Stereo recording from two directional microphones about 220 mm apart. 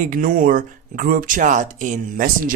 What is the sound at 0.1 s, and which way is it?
Speech, 40° right (ahead or behind).